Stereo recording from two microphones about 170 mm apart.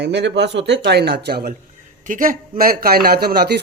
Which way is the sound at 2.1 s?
55° right (ahead or behind).